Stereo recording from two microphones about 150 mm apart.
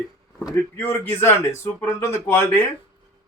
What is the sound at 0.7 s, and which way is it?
Speech, 15° left (ahead or behind).